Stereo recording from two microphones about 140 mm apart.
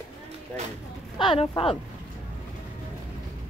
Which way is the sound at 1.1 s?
40° left (ahead or behind).